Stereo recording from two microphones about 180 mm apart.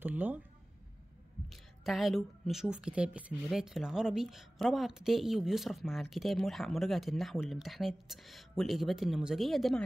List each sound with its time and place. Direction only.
0.0 s speech: 10° right (ahead or behind)
1.5 s speech: centre (ahead or behind)